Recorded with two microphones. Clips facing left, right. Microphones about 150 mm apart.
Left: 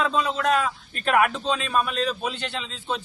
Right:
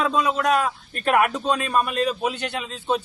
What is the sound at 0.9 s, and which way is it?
A man's voice, 45° right (ahead or behind).